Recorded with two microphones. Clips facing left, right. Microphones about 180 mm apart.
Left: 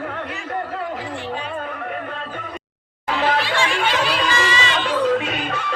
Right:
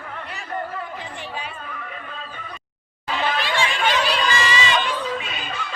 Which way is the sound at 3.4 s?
15° right (ahead or behind).